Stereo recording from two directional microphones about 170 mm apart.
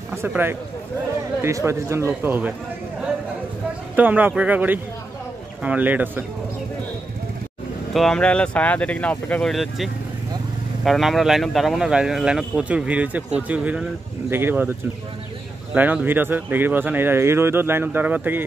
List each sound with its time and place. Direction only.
0.1 s speech: 15° right (ahead or behind)
3.9 s speech: 10° right (ahead or behind)
7.9 s speech: 5° left (ahead or behind)
15.7 s speech: 10° right (ahead or behind)